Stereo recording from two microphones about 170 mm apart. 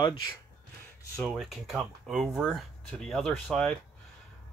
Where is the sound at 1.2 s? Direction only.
Centre (ahead or behind).